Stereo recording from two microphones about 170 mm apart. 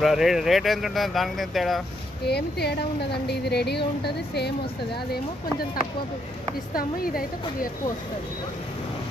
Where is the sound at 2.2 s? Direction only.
75° left (ahead or behind).